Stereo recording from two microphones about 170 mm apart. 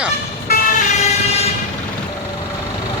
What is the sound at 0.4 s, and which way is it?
Vehicle, 55° left (ahead or behind).